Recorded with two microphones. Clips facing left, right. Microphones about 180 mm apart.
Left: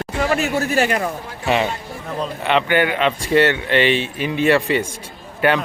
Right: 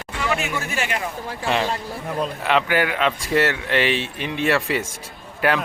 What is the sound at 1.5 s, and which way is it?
Speech, 5° left (ahead or behind).